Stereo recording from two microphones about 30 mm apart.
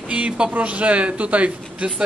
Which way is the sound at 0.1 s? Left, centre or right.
Right.